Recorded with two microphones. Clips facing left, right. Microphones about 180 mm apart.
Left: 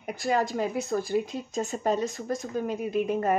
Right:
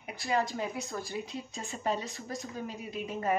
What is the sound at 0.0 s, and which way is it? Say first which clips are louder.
Speech: left 5 dB; 45° left (ahead or behind).